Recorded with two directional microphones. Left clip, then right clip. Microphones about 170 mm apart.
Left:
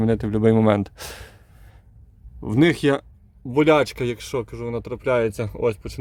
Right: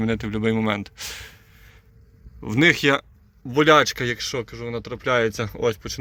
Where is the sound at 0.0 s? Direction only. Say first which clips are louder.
Left 4 dB; 40° left (ahead or behind).